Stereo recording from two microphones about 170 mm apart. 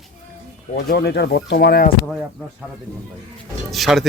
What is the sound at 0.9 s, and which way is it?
Speech, 75° left (ahead or behind).